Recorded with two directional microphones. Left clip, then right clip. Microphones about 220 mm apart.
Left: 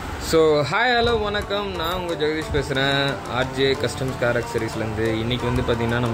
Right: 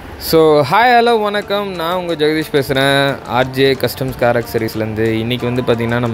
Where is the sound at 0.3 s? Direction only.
30° right (ahead or behind).